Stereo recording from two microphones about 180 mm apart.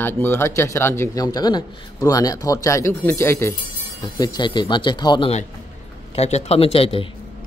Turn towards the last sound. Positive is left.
turn(degrees=30)  # may be behind; listen again after turning